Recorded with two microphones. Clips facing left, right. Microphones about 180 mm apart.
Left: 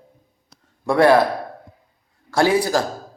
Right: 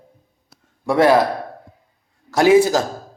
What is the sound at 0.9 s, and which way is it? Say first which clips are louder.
Speech: even; 20° right (ahead or behind).